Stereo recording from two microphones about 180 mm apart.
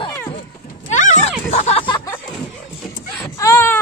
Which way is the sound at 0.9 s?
45° left (ahead or behind).